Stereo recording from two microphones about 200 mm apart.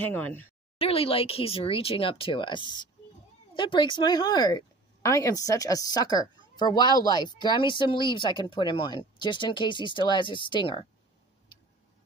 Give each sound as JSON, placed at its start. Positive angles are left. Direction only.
{"t": 0.0, "sound": "speech", "side_deg": 10}
{"t": 0.7, "sound": "speech", "side_deg": 30}